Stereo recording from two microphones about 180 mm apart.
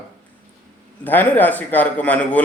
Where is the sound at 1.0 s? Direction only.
10° left (ahead or behind).